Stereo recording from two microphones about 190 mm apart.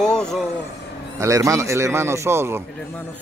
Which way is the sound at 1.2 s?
15° right (ahead or behind).